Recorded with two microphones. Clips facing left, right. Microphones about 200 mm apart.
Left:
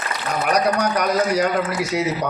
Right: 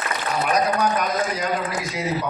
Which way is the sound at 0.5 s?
75° left (ahead or behind).